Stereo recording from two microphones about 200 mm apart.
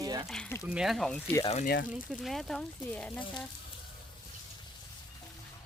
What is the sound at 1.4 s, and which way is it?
Speech, 35° left (ahead or behind).